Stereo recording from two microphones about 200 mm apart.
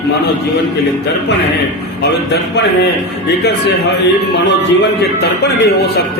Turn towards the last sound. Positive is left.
turn(degrees=55)  # may be behind; listen again after turning